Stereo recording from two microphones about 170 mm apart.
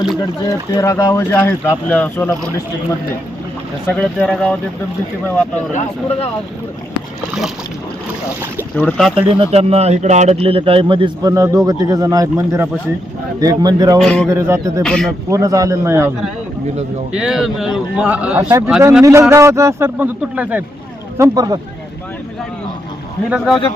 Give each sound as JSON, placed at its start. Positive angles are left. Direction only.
{"t": 0.2, "sound": "speech", "side_deg": 20}
{"t": 3.9, "sound": "speech", "side_deg": 5}
{"t": 5.7, "sound": "speech", "side_deg": 35}
{"t": 8.7, "sound": "a man's voice", "side_deg": 10}
{"t": 9.3, "sound": "a man's voice", "side_deg": -35}
{"t": 14.0, "sound": "a man's voice", "side_deg": 0}
{"t": 14.3, "sound": "speech", "side_deg": -15}
{"t": 14.8, "sound": "a man's voice", "side_deg": 5}
{"t": 15.3, "sound": "a man's voice", "side_deg": -20}
{"t": 21.2, "sound": "a man's voice", "side_deg": -20}